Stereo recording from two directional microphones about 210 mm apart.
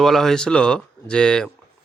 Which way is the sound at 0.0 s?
Centre (ahead or behind).